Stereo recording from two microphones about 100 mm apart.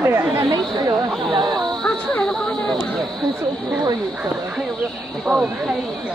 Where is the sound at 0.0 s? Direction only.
25° right (ahead or behind).